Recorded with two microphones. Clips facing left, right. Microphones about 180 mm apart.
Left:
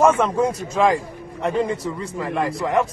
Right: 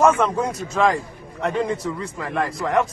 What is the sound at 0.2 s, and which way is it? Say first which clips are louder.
A man's voice: left 2 dB; centre (ahead or behind).